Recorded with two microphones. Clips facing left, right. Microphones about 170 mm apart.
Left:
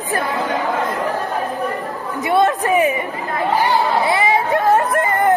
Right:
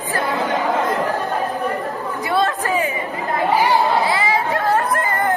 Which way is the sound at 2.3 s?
20° left (ahead or behind).